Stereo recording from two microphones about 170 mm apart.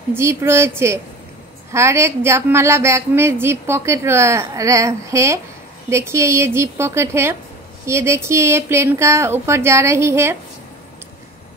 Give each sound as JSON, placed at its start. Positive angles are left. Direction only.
{"t": 0.1, "sound": "a woman's voice", "side_deg": -15}